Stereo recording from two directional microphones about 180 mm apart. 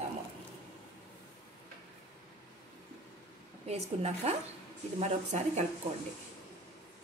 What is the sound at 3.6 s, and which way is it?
A woman's voice, 35° right (ahead or behind).